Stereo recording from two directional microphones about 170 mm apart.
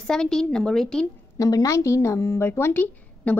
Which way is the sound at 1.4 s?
20° left (ahead or behind).